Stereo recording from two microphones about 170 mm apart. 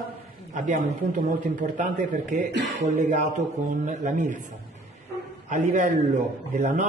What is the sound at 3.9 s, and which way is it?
Speech, 45° right (ahead or behind).